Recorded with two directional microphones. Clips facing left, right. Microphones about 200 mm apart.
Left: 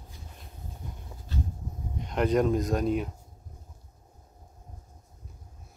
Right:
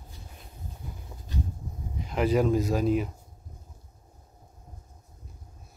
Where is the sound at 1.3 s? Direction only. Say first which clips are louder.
Right 1 dB; 15° right (ahead or behind).